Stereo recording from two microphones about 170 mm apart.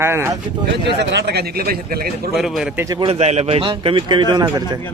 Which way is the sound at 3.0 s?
35° right (ahead or behind).